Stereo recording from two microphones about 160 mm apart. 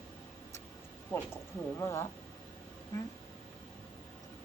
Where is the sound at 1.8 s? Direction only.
15° left (ahead or behind).